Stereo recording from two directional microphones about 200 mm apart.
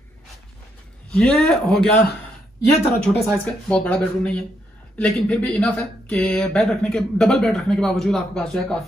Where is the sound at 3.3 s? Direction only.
5° left (ahead or behind).